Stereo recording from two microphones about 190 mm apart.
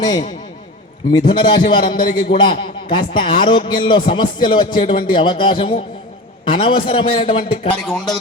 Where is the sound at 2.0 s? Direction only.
45° left (ahead or behind).